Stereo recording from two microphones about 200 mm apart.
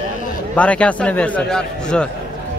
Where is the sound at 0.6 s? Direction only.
5° left (ahead or behind).